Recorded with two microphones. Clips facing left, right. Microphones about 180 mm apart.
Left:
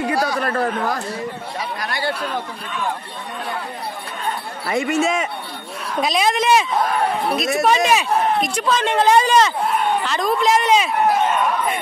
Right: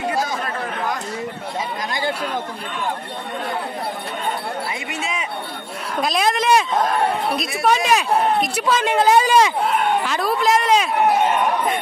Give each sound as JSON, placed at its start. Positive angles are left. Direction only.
{"t": 0.4, "sound": "speech", "side_deg": 65}
{"t": 1.9, "sound": "speech", "side_deg": -20}
{"t": 4.6, "sound": "speech", "side_deg": 45}
{"t": 5.9, "sound": "speech", "side_deg": 0}